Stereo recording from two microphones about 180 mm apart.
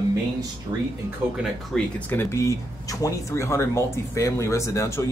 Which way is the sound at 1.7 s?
5° left (ahead or behind).